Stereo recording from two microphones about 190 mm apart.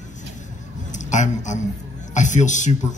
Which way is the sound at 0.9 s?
40° left (ahead or behind).